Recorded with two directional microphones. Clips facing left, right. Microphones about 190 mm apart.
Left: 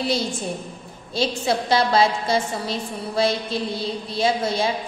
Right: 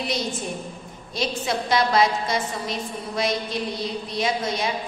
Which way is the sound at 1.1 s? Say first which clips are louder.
Left 3 dB; 30° left (ahead or behind).